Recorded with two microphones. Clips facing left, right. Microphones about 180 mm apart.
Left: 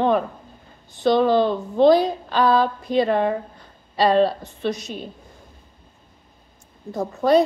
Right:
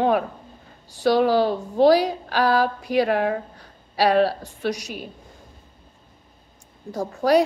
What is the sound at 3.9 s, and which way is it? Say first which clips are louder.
Speech: left 1 dB; 75° right (ahead or behind).